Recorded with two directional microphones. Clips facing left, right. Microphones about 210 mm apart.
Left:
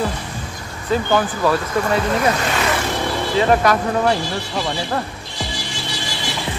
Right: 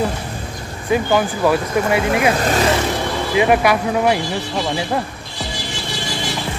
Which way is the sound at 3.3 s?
10° right (ahead or behind).